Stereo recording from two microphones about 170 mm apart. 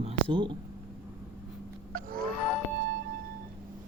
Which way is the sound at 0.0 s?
30° right (ahead or behind).